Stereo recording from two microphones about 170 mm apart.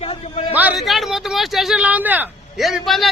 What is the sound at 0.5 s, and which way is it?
Speech, 10° right (ahead or behind).